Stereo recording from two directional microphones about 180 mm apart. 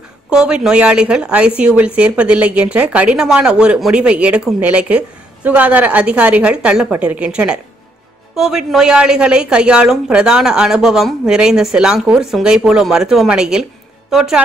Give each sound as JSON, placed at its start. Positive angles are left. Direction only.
{"t": 0.3, "sound": "a woman's voice", "side_deg": -5}